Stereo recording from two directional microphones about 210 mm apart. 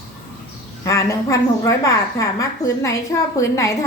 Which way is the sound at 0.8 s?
15° left (ahead or behind).